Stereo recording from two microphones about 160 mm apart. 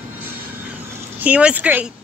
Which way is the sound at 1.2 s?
10° right (ahead or behind).